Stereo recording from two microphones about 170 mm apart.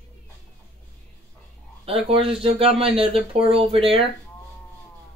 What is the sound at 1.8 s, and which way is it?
Speech, 35° right (ahead or behind).